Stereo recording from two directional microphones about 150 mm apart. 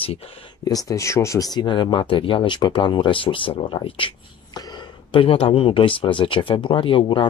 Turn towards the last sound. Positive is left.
turn(degrees=35)  # may be behind; listen again after turning